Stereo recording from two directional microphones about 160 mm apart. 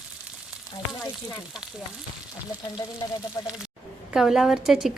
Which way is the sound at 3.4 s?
25° left (ahead or behind).